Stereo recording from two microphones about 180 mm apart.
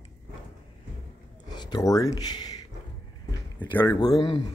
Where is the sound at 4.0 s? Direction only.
25° left (ahead or behind).